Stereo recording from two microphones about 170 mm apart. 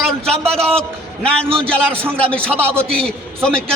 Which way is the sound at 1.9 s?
30° right (ahead or behind).